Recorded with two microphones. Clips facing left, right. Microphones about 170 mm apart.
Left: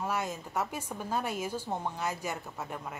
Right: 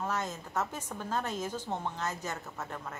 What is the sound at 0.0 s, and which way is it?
A woman's voice, 10° left (ahead or behind).